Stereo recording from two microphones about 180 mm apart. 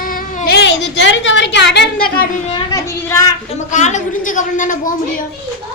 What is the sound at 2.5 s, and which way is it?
Child singing, 25° left (ahead or behind).